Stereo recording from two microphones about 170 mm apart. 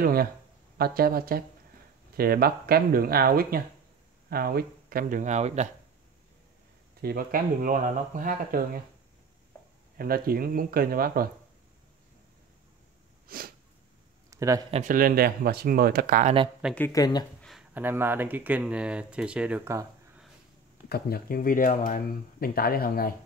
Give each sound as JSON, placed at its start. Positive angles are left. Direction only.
{"t": 0.0, "sound": "speech", "side_deg": -60}
{"t": 7.0, "sound": "speech", "side_deg": -60}
{"t": 9.9, "sound": "speech", "side_deg": -60}
{"t": 13.3, "sound": "sneeze", "side_deg": -60}
{"t": 14.3, "sound": "speech", "side_deg": -20}
{"t": 14.7, "sound": "speech", "side_deg": -50}
{"t": 16.9, "sound": "speech", "side_deg": 25}
{"t": 17.4, "sound": "a sound", "side_deg": 0}
{"t": 17.7, "sound": "speech", "side_deg": -10}
{"t": 20.9, "sound": "speech", "side_deg": 60}